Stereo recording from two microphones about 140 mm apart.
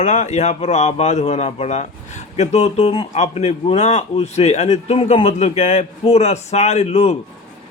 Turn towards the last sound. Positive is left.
turn(degrees=45)  # may be behind; listen again after turning